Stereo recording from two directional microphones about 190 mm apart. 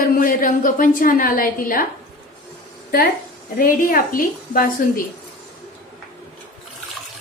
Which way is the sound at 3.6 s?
45° left (ahead or behind).